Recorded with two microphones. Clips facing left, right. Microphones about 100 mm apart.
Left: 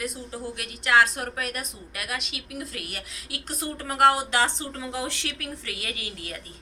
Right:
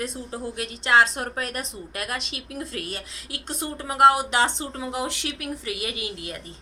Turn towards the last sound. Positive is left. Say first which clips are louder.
# right 3 dB
turn(degrees=-20)  # may be behind; listen again after turning